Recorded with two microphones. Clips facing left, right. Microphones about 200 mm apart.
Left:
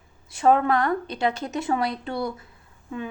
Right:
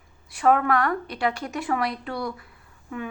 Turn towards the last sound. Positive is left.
turn(degrees=25)  # may be behind; listen again after turning